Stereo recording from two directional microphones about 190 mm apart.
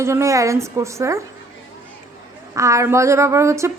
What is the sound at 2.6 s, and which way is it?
A woman's voice, 15° right (ahead or behind).